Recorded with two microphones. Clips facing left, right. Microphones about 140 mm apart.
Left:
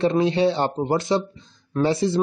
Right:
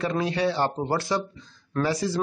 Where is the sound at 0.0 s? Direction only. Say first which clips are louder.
Left 6 dB; 25° left (ahead or behind).